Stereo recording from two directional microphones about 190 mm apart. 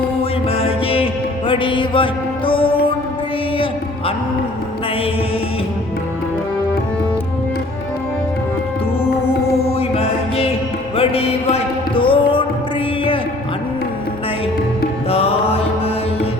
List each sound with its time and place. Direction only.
0.2 s music: 30° left (ahead or behind)
9.0 s music: 55° left (ahead or behind)
9.7 s music: 30° left (ahead or behind)
15.1 s music: 30° left (ahead or behind)